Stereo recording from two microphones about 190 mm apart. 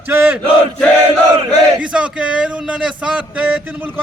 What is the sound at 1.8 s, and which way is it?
A man's voice, 5° right (ahead or behind).